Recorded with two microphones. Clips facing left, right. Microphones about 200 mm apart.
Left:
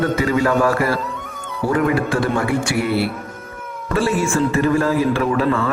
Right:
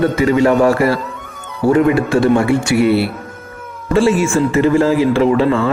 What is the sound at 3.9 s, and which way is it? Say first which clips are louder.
Speech: right 6 dB; 25° right (ahead or behind).